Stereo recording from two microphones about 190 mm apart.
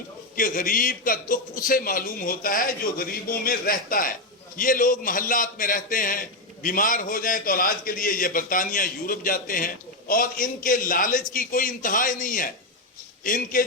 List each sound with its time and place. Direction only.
0.3 s a man's voice: 45° left (ahead or behind)